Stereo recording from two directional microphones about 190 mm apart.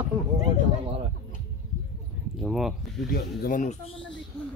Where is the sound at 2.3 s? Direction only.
Centre (ahead or behind).